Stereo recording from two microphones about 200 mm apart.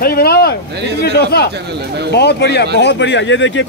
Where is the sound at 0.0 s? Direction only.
50° left (ahead or behind).